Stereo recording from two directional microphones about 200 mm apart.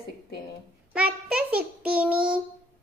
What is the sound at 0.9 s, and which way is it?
A child's voice, 5° right (ahead or behind).